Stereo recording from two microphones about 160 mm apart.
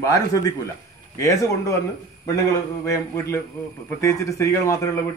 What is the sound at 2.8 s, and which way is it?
A man's voice, 15° left (ahead or behind).